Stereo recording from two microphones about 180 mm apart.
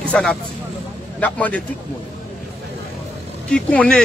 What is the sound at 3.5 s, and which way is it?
Speech, 5° left (ahead or behind).